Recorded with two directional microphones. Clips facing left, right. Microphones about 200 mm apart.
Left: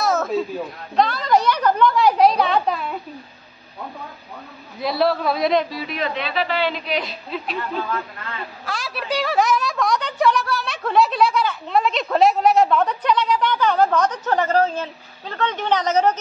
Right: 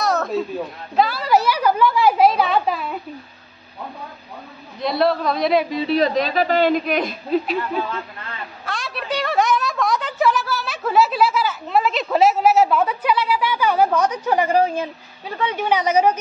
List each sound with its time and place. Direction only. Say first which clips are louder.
0.0 s a sound: even; centre (ahead or behind)
4.7 s a man's voice: right 1 dB; centre (ahead or behind)
5.7 s a woman's voice: right 8 dB; 25° right (ahead or behind)
5.9 s a woman's voice: right 6 dB; 40° right (ahead or behind)
8.6 s a woman's voice: even; centre (ahead or behind)